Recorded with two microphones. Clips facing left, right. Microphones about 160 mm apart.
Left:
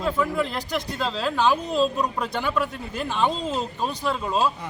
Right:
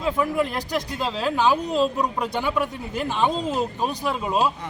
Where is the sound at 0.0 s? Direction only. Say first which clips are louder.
Right 1 dB; 15° right (ahead or behind).